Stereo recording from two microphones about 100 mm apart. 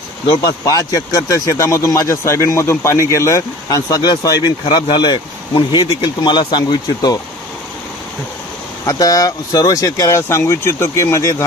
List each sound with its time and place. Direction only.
0.3 s speech: 40° left (ahead or behind)
8.9 s speech: 35° left (ahead or behind)